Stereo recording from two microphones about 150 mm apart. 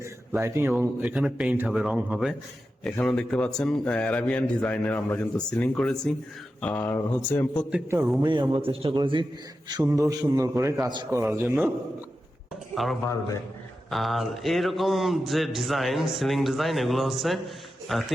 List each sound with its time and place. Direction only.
0.0 s a sound: 15° right (ahead or behind)
1.0 s speech: 5° right (ahead or behind)
2.8 s a man's voice: 5° left (ahead or behind)
7.9 s a man's voice: 10° right (ahead or behind)
8.2 s a man's voice: 30° right (ahead or behind)
9.8 s a man's voice: 20° right (ahead or behind)
12.7 s speech: centre (ahead or behind)